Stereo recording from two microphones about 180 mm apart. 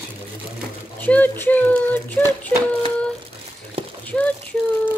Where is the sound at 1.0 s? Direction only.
10° left (ahead or behind).